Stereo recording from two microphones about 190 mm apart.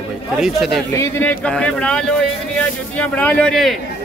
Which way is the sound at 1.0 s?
10° left (ahead or behind).